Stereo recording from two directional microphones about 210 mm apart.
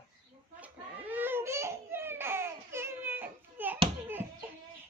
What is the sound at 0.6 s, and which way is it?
Crying, 10° right (ahead or behind).